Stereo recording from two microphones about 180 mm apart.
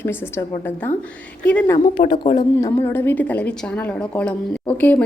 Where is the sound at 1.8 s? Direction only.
35° left (ahead or behind).